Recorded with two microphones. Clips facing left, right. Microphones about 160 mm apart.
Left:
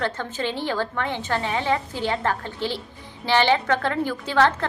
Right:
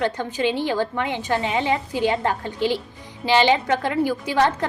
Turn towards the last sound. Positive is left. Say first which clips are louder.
# even
turn(degrees=-15)  # may be behind; listen again after turning